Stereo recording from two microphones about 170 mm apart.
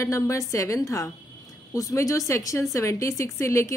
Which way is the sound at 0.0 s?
20° left (ahead or behind).